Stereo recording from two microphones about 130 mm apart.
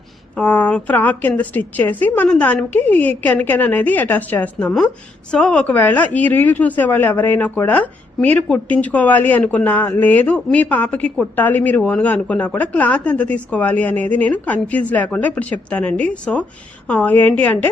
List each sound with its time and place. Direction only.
0.3 s a woman's voice: 10° left (ahead or behind)